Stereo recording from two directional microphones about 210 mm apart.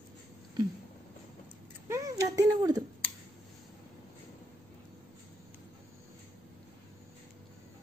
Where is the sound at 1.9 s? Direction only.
15° right (ahead or behind).